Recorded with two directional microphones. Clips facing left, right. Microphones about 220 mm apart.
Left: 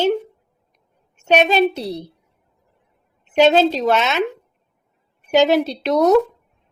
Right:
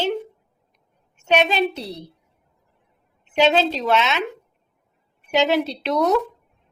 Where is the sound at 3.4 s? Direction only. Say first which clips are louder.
Left 5 dB; 45° left (ahead or behind).